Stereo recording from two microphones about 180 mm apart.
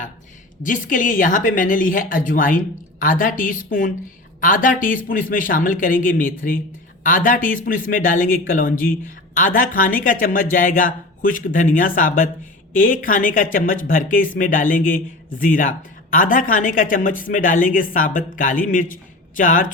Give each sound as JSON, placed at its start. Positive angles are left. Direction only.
{"t": 0.6, "sound": "speech", "side_deg": 45}